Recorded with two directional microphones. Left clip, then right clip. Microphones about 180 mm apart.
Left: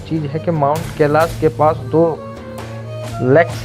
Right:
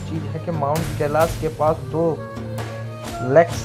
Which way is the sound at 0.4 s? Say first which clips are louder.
Left 6 dB; 50° left (ahead or behind).